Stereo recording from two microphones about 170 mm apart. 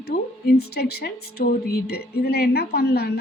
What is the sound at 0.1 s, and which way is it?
Speech, 65° left (ahead or behind).